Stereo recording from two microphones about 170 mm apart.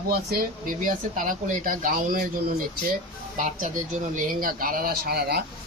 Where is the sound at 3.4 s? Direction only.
50° right (ahead or behind).